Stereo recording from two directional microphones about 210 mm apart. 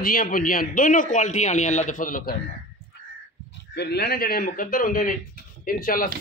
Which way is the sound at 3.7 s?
50° left (ahead or behind).